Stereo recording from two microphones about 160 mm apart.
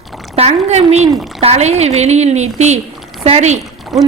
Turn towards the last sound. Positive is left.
turn(degrees=0)  # may be behind; listen again after turning